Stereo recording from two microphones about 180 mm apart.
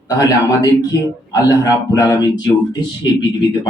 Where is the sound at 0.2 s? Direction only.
20° left (ahead or behind).